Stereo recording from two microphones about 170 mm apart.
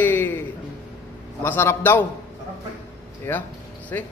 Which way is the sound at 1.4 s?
15° left (ahead or behind).